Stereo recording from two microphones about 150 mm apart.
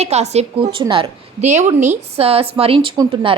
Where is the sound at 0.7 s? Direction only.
35° right (ahead or behind).